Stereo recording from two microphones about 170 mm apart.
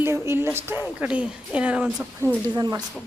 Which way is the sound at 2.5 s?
20° right (ahead or behind).